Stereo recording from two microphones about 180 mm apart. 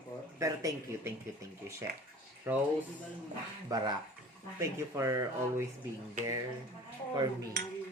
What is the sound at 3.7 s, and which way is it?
Speech, 25° right (ahead or behind).